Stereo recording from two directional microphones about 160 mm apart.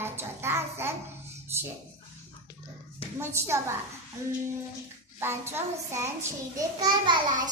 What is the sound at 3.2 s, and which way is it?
Speech, 15° right (ahead or behind).